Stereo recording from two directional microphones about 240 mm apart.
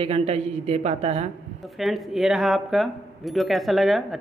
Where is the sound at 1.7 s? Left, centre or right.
Centre.